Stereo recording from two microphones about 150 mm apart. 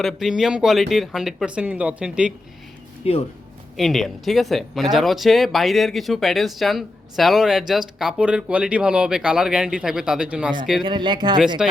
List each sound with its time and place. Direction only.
0.0 s speech: centre (ahead or behind)
3.0 s speech: 40° left (ahead or behind)
3.8 s speech: centre (ahead or behind)
10.8 s speech: 30° right (ahead or behind)
11.3 s speech: 5° right (ahead or behind)